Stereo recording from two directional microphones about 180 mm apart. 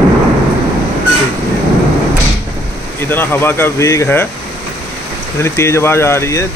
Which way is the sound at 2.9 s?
10° left (ahead or behind).